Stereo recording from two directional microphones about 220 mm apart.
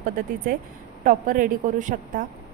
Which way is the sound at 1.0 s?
35° right (ahead or behind).